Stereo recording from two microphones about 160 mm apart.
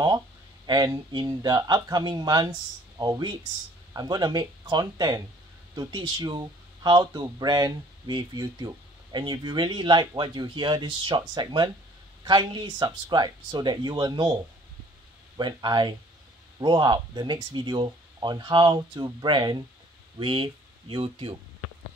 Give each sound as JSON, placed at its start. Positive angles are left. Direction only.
{"t": 0.7, "sound": "speech", "side_deg": -25}